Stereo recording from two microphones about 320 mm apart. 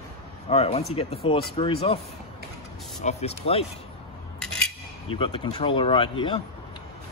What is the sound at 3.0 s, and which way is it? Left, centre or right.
Speech, centre.